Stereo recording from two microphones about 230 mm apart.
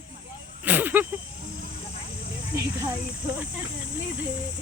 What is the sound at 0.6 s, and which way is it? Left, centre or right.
Snake, centre.